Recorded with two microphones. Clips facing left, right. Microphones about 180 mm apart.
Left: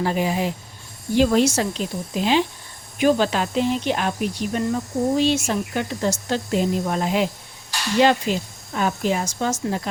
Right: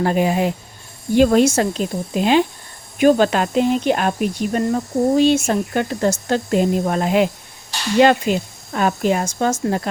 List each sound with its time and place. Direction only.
0.0 s speech: 55° right (ahead or behind)